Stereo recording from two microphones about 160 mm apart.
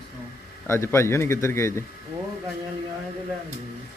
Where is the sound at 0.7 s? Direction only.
15° left (ahead or behind).